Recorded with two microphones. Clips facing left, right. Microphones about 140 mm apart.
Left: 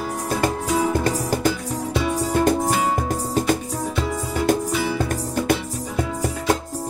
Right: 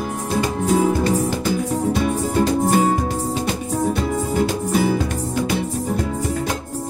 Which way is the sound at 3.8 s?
45° right (ahead or behind).